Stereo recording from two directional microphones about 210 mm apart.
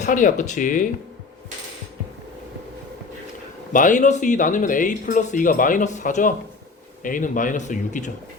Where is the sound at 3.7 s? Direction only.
35° left (ahead or behind).